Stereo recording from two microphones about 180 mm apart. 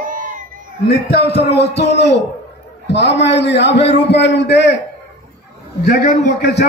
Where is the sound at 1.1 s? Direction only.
65° left (ahead or behind).